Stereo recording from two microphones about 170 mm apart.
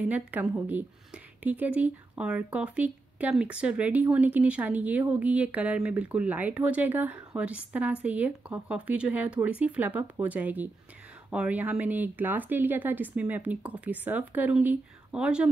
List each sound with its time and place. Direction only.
0.3 s speech: 10° right (ahead or behind)